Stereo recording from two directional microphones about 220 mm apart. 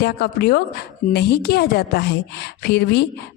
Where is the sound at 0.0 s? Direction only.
50° left (ahead or behind).